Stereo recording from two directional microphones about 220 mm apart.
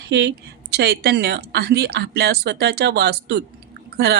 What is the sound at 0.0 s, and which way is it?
A woman's voice, 50° right (ahead or behind).